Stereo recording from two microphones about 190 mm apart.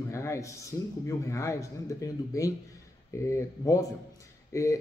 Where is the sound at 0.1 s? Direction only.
15° left (ahead or behind).